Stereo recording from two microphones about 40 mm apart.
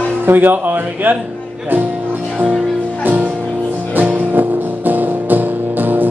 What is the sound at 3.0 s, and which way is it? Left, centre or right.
Music, right.